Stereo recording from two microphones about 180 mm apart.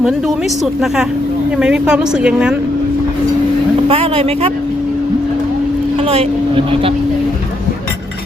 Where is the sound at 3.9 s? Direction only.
30° right (ahead or behind).